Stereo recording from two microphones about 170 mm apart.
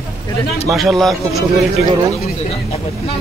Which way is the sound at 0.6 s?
Centre (ahead or behind).